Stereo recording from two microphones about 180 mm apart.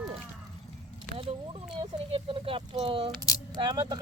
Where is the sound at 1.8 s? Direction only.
35° right (ahead or behind).